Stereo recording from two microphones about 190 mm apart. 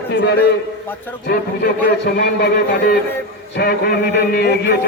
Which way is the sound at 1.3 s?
55° left (ahead or behind).